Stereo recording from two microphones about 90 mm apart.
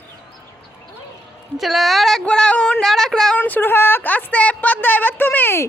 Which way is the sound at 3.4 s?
20° left (ahead or behind).